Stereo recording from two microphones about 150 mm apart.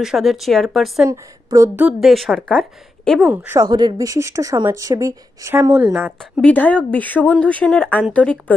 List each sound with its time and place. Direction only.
0.0 s speech: 5° right (ahead or behind)
1.1 s a woman's voice: 20° right (ahead or behind)
1.9 s speech: centre (ahead or behind)
3.2 s a woman's voice: 15° right (ahead or behind)
3.6 s a woman's voice: 30° right (ahead or behind)
5.7 s a woman's voice: 5° right (ahead or behind)
6.4 s speech: 10° left (ahead or behind)